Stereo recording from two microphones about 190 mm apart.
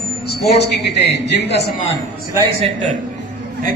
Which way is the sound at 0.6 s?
60° left (ahead or behind).